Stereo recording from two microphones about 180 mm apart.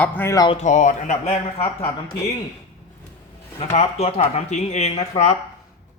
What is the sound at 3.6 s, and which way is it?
A man's voice, 35° left (ahead or behind).